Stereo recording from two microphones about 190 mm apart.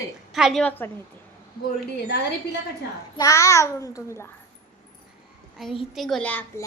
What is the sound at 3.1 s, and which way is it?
A child's voice, 15° left (ahead or behind).